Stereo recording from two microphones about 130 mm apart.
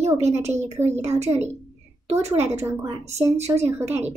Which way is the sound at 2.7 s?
20° right (ahead or behind).